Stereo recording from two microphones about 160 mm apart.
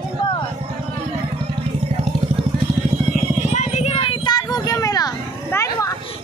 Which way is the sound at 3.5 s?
45° left (ahead or behind).